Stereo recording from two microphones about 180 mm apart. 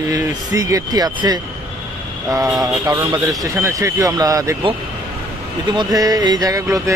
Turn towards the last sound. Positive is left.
turn(degrees=-15)  # may be behind; listen again after turning